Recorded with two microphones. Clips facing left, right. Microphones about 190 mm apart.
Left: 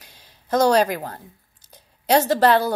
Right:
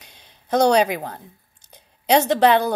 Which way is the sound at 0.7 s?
5° right (ahead or behind).